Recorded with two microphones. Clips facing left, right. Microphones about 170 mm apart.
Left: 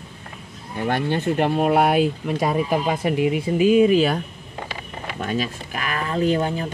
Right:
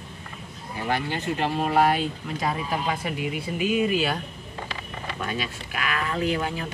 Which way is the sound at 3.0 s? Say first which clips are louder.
Left 9 dB; 45° left (ahead or behind).